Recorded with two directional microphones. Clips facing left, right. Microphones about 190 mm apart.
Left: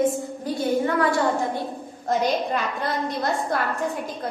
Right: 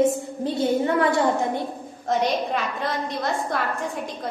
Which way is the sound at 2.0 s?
Centre (ahead or behind).